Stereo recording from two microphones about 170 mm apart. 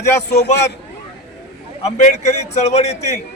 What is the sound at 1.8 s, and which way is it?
Speech, 40° left (ahead or behind).